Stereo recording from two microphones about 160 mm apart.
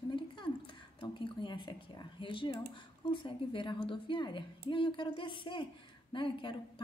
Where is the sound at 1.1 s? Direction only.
30° left (ahead or behind).